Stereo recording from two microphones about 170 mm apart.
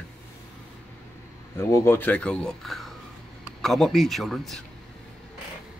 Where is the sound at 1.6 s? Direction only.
15° left (ahead or behind).